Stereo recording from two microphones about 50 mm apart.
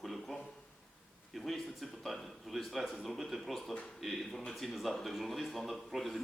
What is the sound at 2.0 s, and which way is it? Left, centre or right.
A man's voice, centre.